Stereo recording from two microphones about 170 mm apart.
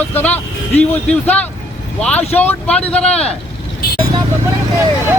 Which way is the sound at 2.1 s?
10° left (ahead or behind).